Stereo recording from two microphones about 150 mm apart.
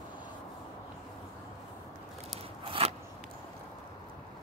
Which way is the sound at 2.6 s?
35° right (ahead or behind).